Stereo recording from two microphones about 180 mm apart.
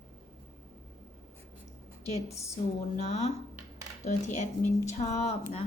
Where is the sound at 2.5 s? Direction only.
35° left (ahead or behind).